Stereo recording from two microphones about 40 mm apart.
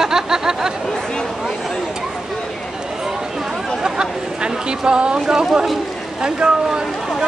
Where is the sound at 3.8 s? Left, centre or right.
Right.